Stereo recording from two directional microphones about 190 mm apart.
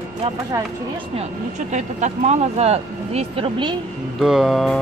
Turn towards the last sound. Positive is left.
turn(degrees=0)  # may be behind; listen again after turning